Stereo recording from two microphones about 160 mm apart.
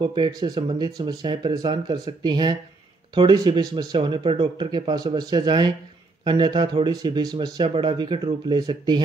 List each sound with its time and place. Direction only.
0.0 s speech: 30° right (ahead or behind)